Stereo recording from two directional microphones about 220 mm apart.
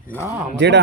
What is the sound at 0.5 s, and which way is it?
Speech, 50° right (ahead or behind).